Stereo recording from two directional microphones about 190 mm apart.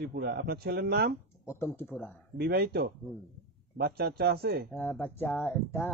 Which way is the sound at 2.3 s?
55° right (ahead or behind).